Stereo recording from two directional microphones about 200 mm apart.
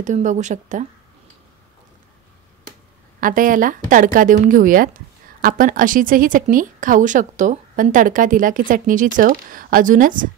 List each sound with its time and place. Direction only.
0.0 s speech: 35° right (ahead or behind)
3.2 s speech: 45° right (ahead or behind)